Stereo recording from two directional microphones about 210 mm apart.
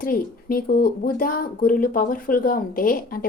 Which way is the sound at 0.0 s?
45° left (ahead or behind).